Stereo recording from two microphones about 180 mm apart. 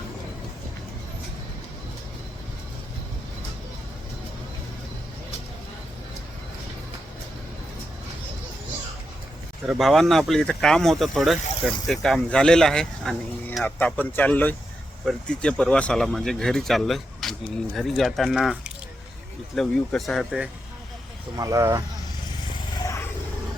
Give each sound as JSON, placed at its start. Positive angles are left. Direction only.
{"t": 9.6, "sound": "speech", "side_deg": 0}
{"t": 19.5, "sound": "speech", "side_deg": 0}
{"t": 21.3, "sound": "speech", "side_deg": -20}